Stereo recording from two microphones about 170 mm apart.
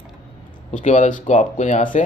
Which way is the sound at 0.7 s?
45° left (ahead or behind).